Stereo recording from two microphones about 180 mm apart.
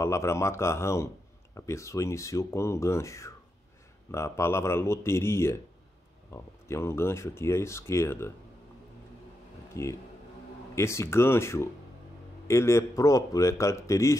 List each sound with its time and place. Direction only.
0.0 s speech: 15° left (ahead or behind)
9.8 s speech: 15° left (ahead or behind)